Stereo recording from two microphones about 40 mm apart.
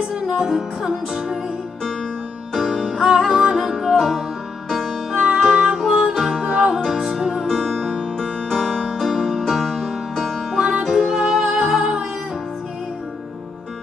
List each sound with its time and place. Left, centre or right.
0.1 s music: centre
2.5 s music: centre
5.1 s music: centre